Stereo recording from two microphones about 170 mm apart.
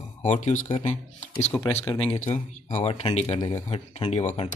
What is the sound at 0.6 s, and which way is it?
Speech, 35° left (ahead or behind).